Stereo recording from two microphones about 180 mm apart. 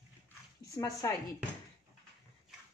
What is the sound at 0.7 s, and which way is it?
Speech, 20° left (ahead or behind).